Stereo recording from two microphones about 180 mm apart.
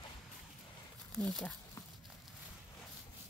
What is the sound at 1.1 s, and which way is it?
Speech, centre (ahead or behind).